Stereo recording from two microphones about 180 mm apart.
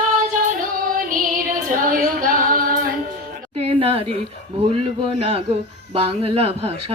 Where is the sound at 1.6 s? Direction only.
50° right (ahead or behind).